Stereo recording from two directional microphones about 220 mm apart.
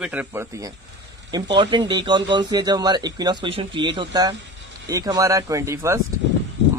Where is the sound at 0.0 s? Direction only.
5° right (ahead or behind).